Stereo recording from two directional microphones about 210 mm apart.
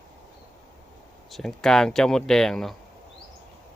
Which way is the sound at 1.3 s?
Centre (ahead or behind).